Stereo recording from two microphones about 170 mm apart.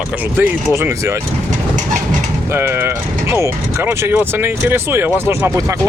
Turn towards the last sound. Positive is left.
turn(degrees=-15)  # may be behind; listen again after turning